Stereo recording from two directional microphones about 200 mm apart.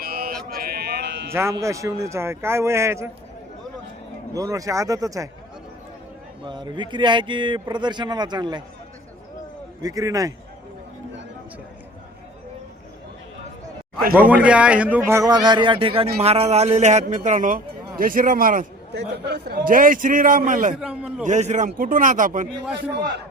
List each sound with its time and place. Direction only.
0.0 s a sound: 50° right (ahead or behind)
1.3 s speech: 15° right (ahead or behind)
4.4 s speech: 15° right (ahead or behind)
6.4 s speech: 20° right (ahead or behind)
9.8 s speech: 15° right (ahead or behind)
14.1 s a man's voice: 10° right (ahead or behind); by 20.7 s 40° right (ahead or behind)
20.7 s a man's voice: 5° right (ahead or behind)
21.2 s a man's voice: 35° right (ahead or behind)